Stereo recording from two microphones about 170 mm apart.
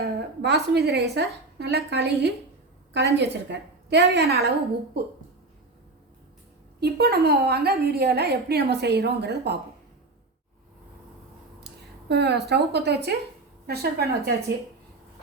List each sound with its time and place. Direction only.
0.0 s a woman's voice: 75° right (ahead or behind)
6.7 s a woman's voice: 70° right (ahead or behind)
11.6 s a woman's voice: 80° right